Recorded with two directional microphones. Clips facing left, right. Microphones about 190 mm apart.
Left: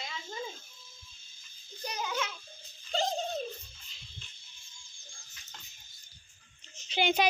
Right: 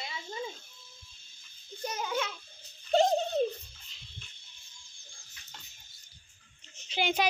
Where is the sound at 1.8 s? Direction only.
25° right (ahead or behind).